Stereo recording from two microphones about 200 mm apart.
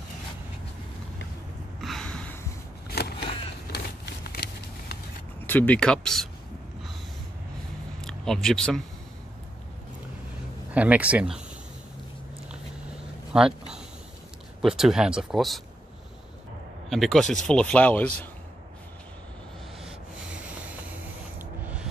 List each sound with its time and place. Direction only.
1.8 s gasp: centre (ahead or behind)
2.9 s a sound: 55° left (ahead or behind)
5.5 s speech: 10° left (ahead or behind)
8.0 s speech: 5° left (ahead or behind)
10.7 s speech: 5° right (ahead or behind)
13.3 s speech: 5° right (ahead or behind)
14.6 s speech: centre (ahead or behind)
16.9 s speech: centre (ahead or behind)
19.8 s rub: 5° right (ahead or behind)
21.4 s spray: 10° right (ahead or behind)